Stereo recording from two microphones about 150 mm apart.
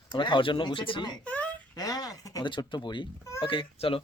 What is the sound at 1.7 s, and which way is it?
Speech, 25° left (ahead or behind).